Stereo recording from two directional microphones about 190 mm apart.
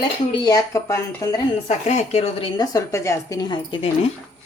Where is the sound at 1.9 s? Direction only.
35° left (ahead or behind).